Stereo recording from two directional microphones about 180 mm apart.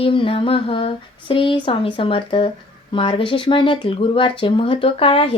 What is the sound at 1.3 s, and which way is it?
Speech, 30° left (ahead or behind).